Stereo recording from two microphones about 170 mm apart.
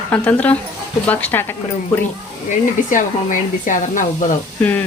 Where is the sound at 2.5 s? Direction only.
50° left (ahead or behind).